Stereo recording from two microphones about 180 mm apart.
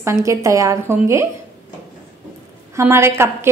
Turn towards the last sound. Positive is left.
turn(degrees=-15)  # may be behind; listen again after turning